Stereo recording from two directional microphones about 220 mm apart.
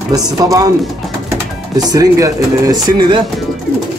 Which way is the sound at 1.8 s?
15° right (ahead or behind).